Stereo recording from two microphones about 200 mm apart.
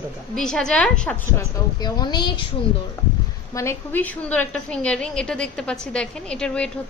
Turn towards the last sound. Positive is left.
turn(degrees=5)  # may be behind; listen again after turning